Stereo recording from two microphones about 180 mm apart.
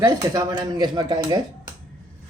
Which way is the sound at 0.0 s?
20° right (ahead or behind).